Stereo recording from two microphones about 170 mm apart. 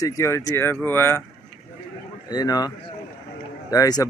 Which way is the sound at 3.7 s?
20° left (ahead or behind).